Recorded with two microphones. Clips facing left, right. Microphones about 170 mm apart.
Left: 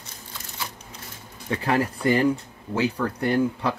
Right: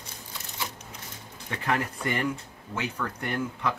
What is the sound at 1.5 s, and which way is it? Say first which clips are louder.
Speech: left 6 dB; 35° left (ahead or behind).